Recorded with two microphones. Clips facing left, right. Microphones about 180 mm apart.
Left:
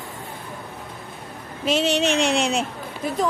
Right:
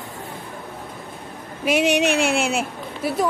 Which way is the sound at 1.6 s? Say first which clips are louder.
Right 2 dB; 15° right (ahead or behind).